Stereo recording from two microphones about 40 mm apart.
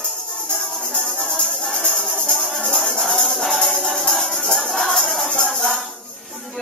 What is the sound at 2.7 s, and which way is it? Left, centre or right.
Music, centre.